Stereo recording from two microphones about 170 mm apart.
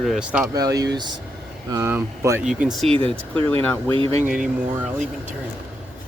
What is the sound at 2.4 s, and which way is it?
Speech, 5° right (ahead or behind).